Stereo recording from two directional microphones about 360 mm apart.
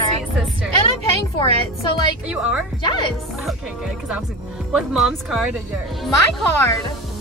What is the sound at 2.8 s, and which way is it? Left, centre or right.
Speech, centre.